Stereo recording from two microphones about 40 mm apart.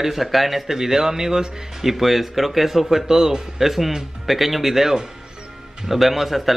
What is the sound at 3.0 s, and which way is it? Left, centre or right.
A man's voice, centre.